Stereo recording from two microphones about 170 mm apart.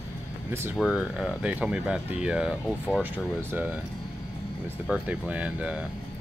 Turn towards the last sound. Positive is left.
turn(degrees=-5)  # may be behind; listen again after turning